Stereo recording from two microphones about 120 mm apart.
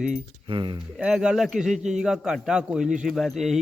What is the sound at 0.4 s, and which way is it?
Speech, 40° right (ahead or behind).